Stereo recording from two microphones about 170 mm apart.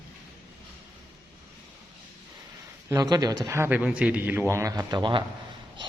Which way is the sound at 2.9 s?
20° right (ahead or behind).